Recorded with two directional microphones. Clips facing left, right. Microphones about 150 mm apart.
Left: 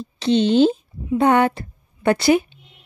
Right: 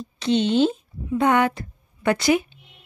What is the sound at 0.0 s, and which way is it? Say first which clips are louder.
A woman's voice: left 3 dB; 30° left (ahead or behind).